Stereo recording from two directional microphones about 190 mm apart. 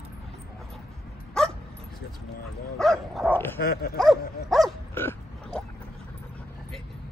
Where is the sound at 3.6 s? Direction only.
55° left (ahead or behind).